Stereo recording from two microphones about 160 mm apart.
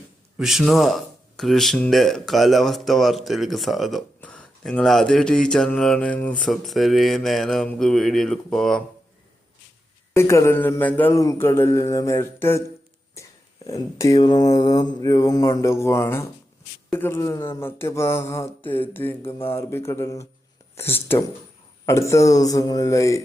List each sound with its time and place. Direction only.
0.3 s speech: centre (ahead or behind)
10.2 s speech: 15° left (ahead or behind)
13.7 s mantra: 20° left (ahead or behind)
16.9 s speech: 15° left (ahead or behind)
21.8 s mantra: 20° left (ahead or behind)